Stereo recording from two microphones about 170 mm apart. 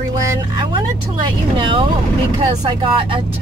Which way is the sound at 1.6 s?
30° right (ahead or behind).